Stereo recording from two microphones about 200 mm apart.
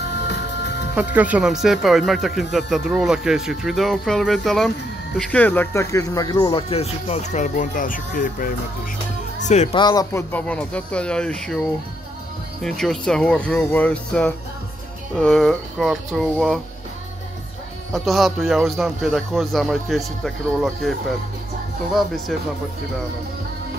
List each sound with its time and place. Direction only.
0.1 s music: 60° left (ahead or behind)
0.9 s speech: 5° right (ahead or behind); by 9.8 s 35° left (ahead or behind)
9.8 s speech: 20° left (ahead or behind)
12.6 s speech: centre (ahead or behind)
17.9 s speech: centre (ahead or behind)